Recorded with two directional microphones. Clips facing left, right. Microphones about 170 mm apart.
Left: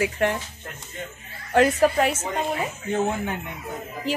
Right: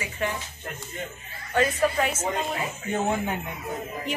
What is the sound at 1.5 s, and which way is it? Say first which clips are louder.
Speech: left 5 dB; 65° left (ahead or behind).